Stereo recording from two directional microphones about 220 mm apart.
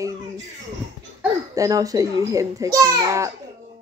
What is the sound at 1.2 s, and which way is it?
Speech, 15° right (ahead or behind).